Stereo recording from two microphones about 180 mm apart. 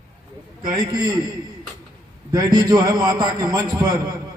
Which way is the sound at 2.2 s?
20° right (ahead or behind).